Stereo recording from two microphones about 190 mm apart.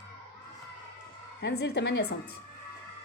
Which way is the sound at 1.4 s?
60° left (ahead or behind).